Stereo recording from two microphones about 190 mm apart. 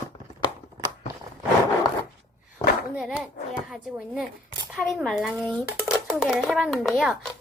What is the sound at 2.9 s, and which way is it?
A child's voice, 5° right (ahead or behind).